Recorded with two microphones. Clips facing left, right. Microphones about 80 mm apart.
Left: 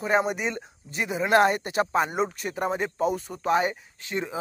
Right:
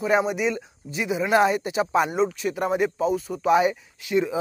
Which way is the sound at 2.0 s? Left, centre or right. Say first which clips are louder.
Right 4 dB; left.